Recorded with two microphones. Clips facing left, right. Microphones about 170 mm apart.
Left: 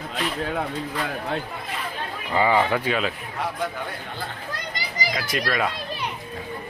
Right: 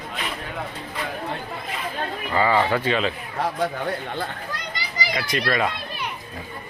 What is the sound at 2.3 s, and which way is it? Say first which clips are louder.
Speech: even; 15° left (ahead or behind).